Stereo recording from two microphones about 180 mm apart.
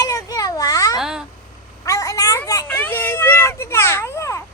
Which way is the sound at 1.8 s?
20° left (ahead or behind).